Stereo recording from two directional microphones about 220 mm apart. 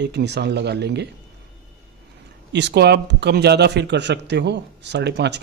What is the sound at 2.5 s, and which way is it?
Speech, 50° right (ahead or behind).